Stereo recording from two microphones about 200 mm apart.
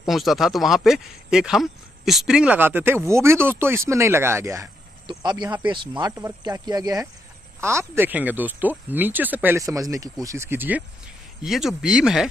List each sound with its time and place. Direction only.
0.0 s speech: centre (ahead or behind)